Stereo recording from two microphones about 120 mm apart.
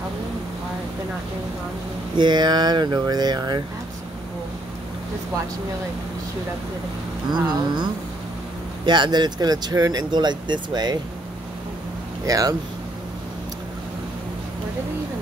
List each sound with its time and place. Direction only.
2.1 s speech: 40° right (ahead or behind)
7.2 s speech: 35° right (ahead or behind)
12.3 s speech: 30° right (ahead or behind)